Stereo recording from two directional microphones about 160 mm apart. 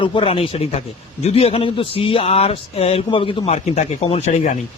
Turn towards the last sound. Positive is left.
turn(degrees=50)  # may be behind; listen again after turning